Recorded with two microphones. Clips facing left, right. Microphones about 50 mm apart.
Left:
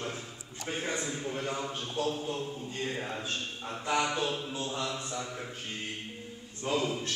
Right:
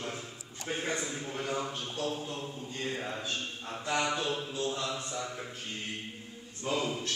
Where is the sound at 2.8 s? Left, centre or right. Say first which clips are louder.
Even; centre.